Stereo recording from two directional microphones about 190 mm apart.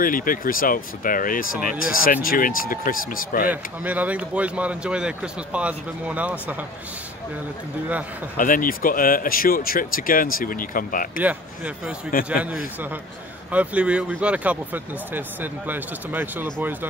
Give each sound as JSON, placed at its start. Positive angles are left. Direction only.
{"t": 0.0, "sound": "speech", "side_deg": 45}
{"t": 3.4, "sound": "speech", "side_deg": -10}
{"t": 8.4, "sound": "speech", "side_deg": 45}
{"t": 11.1, "sound": "speech", "side_deg": -10}
{"t": 12.1, "sound": "speech", "side_deg": 50}
{"t": 13.5, "sound": "speech", "side_deg": -5}